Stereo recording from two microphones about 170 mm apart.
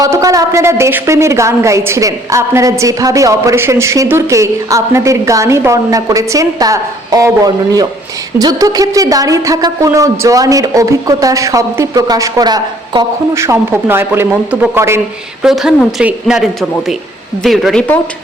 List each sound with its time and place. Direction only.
0.0 s a woman's voice: 20° right (ahead or behind)
15.4 s a woman's voice: centre (ahead or behind)